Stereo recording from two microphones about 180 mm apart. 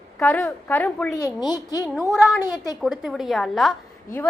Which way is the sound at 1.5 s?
20° left (ahead or behind).